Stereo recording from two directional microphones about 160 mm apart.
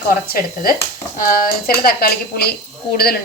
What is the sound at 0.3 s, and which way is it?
A woman's voice, 65° left (ahead or behind).